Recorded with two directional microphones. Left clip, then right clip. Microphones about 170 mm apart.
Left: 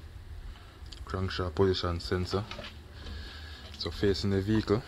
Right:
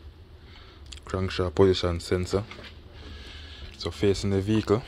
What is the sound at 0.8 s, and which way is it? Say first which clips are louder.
Speech: right 5 dB; 25° right (ahead or behind).